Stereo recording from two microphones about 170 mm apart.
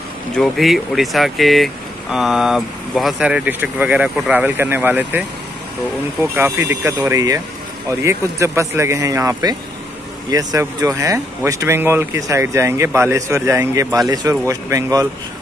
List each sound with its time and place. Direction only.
0.3 s speech: centre (ahead or behind)
6.2 s speech: 10° right (ahead or behind)